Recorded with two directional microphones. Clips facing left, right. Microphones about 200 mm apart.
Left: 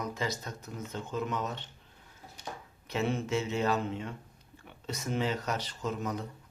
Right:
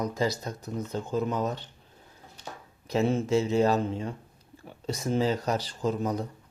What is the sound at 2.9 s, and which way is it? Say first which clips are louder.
Speech: right 6 dB; 35° right (ahead or behind).